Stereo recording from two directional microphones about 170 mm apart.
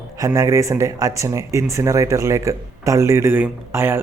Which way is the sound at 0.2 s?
20° right (ahead or behind).